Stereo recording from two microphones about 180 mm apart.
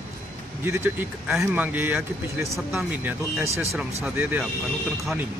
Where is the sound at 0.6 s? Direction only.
15° right (ahead or behind).